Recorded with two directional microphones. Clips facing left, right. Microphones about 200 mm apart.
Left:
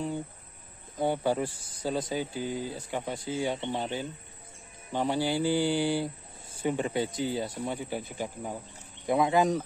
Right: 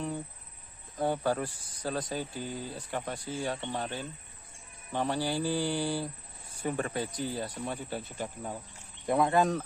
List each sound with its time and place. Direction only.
0.9 s speech: 20° left (ahead or behind)
2.0 s speech: 10° left (ahead or behind)
7.3 s speech: 15° left (ahead or behind)